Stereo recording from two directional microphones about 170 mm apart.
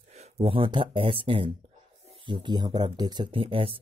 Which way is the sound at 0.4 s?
30° right (ahead or behind).